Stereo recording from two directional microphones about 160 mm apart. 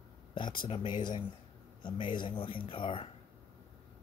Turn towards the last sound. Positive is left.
turn(degrees=35)  # may be behind; listen again after turning